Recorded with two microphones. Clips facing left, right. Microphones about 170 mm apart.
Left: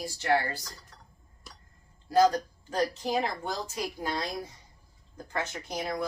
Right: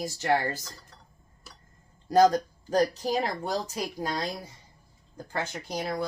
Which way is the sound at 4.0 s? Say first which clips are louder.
Right 2 dB; 35° right (ahead or behind).